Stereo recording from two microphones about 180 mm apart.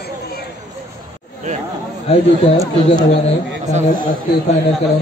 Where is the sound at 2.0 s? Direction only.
35° left (ahead or behind).